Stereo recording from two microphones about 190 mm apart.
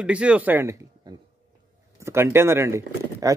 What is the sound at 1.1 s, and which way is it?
Speech, 20° right (ahead or behind).